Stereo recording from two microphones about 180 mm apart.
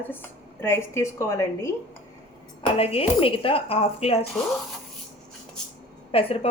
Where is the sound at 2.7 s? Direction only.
30° left (ahead or behind).